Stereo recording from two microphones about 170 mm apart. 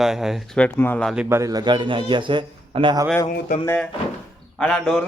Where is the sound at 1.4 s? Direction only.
20° right (ahead or behind).